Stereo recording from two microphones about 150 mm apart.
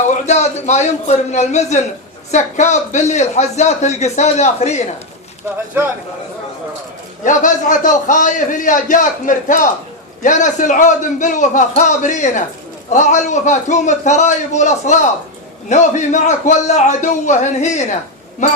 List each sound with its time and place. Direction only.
0.3 s a man's voice: 50° left (ahead or behind)
7.3 s a man's voice: 60° left (ahead or behind)